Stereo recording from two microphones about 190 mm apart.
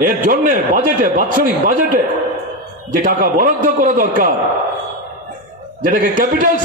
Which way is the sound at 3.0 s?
45° right (ahead or behind).